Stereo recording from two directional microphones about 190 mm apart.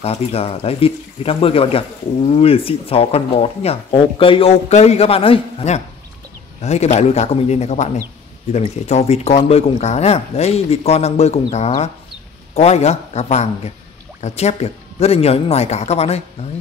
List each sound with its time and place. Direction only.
0.0 s speech: 30° left (ahead or behind)